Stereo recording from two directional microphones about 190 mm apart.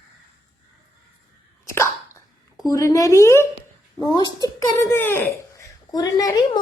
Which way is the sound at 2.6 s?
15° left (ahead or behind).